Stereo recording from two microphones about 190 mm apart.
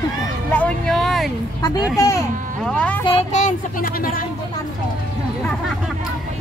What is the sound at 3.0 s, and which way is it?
A child's voice, 35° left (ahead or behind).